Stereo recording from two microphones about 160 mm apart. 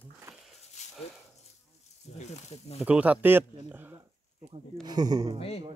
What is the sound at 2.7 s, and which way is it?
Speech, 5° right (ahead or behind).